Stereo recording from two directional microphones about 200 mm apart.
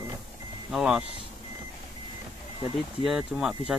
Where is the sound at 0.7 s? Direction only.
5° right (ahead or behind).